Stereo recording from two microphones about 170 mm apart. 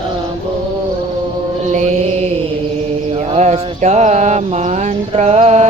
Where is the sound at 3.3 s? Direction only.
40° right (ahead or behind).